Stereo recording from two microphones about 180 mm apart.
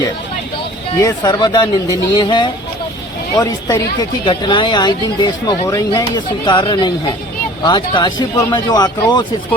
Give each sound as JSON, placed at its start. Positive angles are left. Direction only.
{"t": 0.9, "sound": "speech", "side_deg": 20}